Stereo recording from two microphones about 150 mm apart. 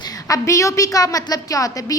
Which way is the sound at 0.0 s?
25° left (ahead or behind).